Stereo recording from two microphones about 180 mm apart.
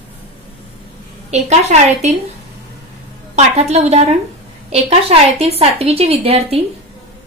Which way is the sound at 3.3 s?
40° right (ahead or behind).